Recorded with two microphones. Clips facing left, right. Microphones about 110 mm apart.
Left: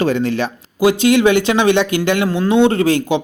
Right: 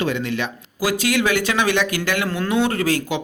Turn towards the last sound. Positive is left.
turn(degrees=25)  # may be behind; listen again after turning